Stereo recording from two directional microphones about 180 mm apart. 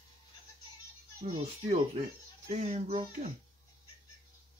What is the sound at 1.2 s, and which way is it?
A child's voice, 40° right (ahead or behind).